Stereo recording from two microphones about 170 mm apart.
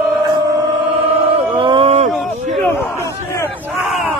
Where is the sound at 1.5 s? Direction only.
30° right (ahead or behind).